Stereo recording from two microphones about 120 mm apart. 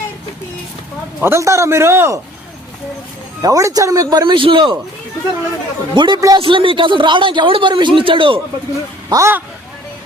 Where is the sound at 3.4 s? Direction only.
30° right (ahead or behind).